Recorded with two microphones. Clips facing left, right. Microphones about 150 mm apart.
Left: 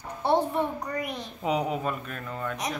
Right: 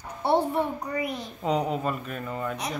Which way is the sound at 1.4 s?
5° left (ahead or behind).